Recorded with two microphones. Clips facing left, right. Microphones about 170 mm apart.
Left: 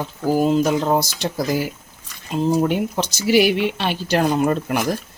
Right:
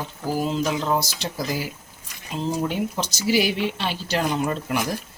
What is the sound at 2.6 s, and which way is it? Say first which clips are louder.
Speech: left 5 dB; 60° left (ahead or behind).